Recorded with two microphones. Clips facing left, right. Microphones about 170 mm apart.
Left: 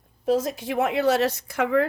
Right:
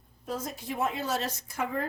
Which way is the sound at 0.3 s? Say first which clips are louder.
Left 11 dB; 90° left.